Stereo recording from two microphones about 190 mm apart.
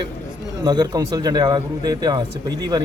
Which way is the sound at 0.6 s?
20° right (ahead or behind).